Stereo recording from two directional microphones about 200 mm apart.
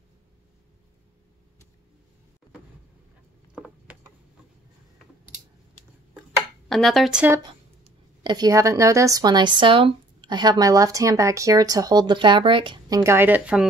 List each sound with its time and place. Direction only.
3.5 s a sound: 5° right (ahead or behind)
6.7 s speech: centre (ahead or behind)
8.2 s speech: 20° right (ahead or behind)